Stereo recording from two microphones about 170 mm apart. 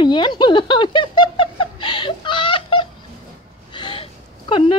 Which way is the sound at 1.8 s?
30° left (ahead or behind).